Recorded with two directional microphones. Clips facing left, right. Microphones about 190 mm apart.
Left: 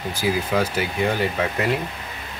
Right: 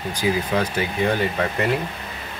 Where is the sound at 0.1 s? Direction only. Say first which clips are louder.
Even; 5° left (ahead or behind).